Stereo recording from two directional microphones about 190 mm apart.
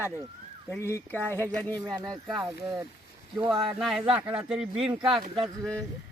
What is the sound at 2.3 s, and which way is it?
Speech, 15° right (ahead or behind).